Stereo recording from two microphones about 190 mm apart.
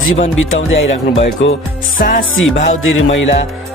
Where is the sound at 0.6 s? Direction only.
85° left.